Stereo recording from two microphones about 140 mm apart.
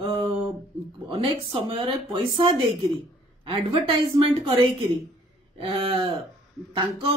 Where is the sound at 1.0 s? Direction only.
40° right (ahead or behind).